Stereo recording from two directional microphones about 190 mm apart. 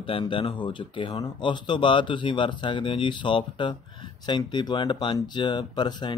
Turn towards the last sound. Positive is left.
turn(degrees=20)  # may be behind; listen again after turning